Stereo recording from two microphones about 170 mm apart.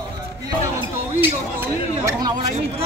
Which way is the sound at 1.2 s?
15° right (ahead or behind).